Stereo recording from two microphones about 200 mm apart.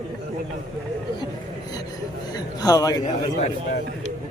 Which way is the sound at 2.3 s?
20° left (ahead or behind).